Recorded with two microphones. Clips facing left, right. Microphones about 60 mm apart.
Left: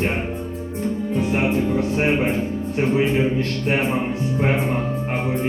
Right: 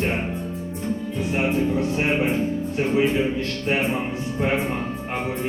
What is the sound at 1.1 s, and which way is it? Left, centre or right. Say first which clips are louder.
Speech: left 3 dB; left.